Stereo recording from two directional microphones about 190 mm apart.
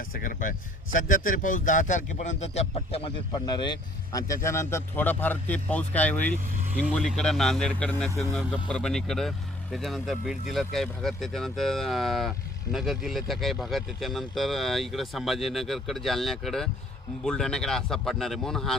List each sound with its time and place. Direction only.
0.0 s a man's voice: 45° left (ahead or behind); by 18.8 s centre (ahead or behind)